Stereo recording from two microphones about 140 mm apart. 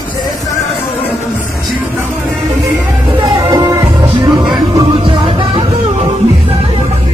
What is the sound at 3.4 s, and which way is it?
Music, 30° right (ahead or behind).